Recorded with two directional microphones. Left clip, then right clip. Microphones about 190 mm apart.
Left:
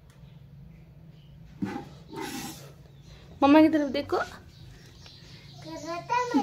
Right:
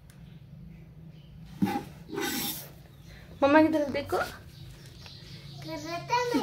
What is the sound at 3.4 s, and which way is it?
A woman's voice, 30° left (ahead or behind).